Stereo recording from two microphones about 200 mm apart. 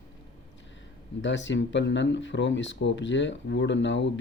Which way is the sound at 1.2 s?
65° left (ahead or behind).